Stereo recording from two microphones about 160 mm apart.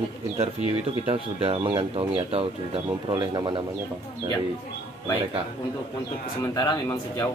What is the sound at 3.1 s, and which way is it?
Speech, 25° right (ahead or behind).